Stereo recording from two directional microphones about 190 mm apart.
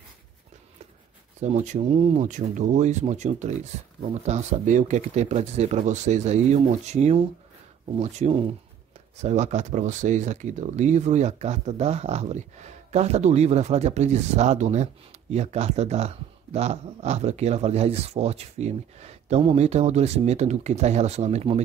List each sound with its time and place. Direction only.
1.4 s speech: 40° right (ahead or behind)
9.2 s speech: 35° right (ahead or behind)